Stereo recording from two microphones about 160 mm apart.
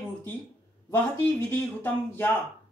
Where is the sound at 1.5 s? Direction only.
10° left (ahead or behind).